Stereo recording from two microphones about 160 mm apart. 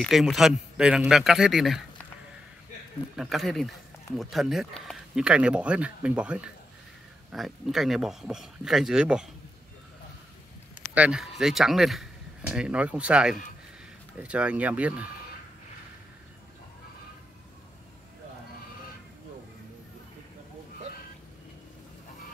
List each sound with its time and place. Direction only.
0.0 s speech: centre (ahead or behind)
3.2 s speech: centre (ahead or behind)
11.0 s speech: 5° right (ahead or behind)